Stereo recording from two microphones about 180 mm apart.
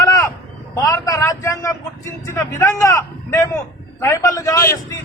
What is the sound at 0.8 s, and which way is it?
A man's voice, 20° left (ahead or behind).